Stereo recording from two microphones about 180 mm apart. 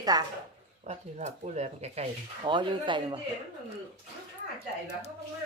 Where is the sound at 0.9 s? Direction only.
40° right (ahead or behind).